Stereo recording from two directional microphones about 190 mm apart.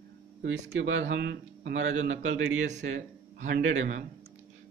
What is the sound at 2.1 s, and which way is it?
Speech, 80° right.